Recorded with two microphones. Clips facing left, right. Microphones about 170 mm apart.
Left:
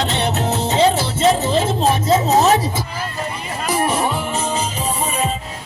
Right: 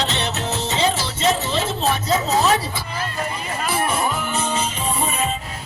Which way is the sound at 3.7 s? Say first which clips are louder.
Left 4 dB; 35° left (ahead or behind).